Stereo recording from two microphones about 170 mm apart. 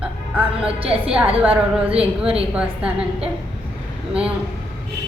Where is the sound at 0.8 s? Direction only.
35° right (ahead or behind).